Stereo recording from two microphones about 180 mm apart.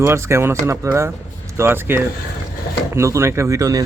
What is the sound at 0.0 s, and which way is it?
Speech, 15° right (ahead or behind).